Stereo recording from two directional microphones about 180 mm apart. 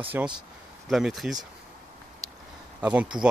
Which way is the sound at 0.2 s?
10° right (ahead or behind).